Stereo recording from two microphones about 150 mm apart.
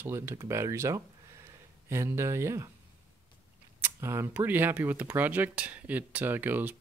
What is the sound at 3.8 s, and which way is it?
Speech, 15° right (ahead or behind).